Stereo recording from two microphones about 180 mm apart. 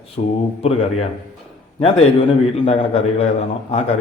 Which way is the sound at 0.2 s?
40° left (ahead or behind).